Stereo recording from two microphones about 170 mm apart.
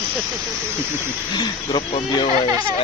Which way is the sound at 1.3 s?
25° left (ahead or behind).